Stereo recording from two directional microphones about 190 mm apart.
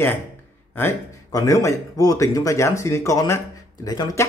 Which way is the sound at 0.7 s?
15° left (ahead or behind).